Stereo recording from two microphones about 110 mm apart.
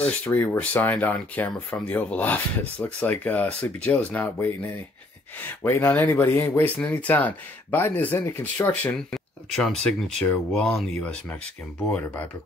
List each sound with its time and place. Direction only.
0.0 s speech: 15° left (ahead or behind)
8.9 s speech: 5° left (ahead or behind)